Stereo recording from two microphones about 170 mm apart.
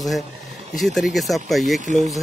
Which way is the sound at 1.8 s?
45° right (ahead or behind).